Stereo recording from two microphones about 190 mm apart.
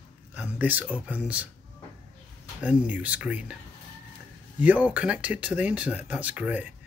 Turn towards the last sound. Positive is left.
turn(degrees=-10)  # may be behind; listen again after turning